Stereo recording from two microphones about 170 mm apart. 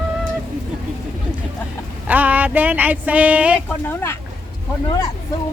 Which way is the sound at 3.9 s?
15° left (ahead or behind).